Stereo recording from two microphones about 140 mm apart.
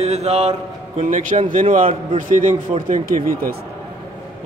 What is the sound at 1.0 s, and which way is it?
Speech, 60° right (ahead or behind).